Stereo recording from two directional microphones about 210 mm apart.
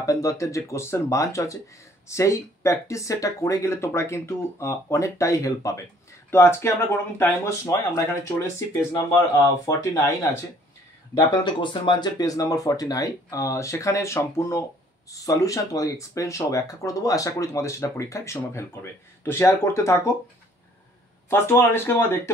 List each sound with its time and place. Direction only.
0.0 s speech: 15° left (ahead or behind)
11.1 s speech: 20° left (ahead or behind)
21.3 s speech: 10° left (ahead or behind)